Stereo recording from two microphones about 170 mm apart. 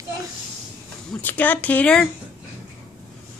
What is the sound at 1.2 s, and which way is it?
Speech, 10° left (ahead or behind).